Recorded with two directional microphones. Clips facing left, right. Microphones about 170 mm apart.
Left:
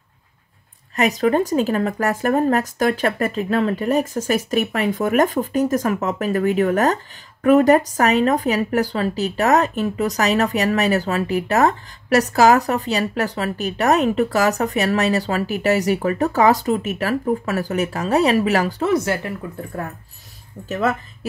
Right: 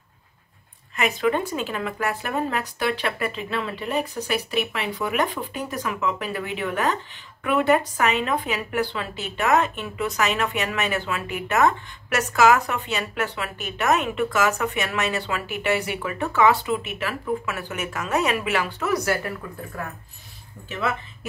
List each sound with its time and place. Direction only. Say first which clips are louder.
0.9 s speech: left 5 dB; 40° left (ahead or behind)
18.9 s speech: left 4 dB; 25° left (ahead or behind)
20.6 s speech: left 6 dB; 40° left (ahead or behind)